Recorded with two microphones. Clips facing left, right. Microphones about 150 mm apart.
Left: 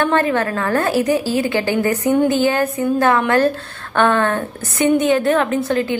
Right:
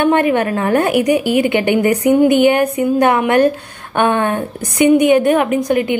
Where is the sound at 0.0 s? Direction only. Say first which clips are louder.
Right 4 dB; 20° right (ahead or behind).